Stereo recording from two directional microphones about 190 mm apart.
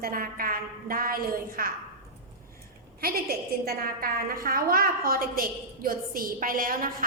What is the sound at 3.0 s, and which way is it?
A woman's voice, 55° right (ahead or behind).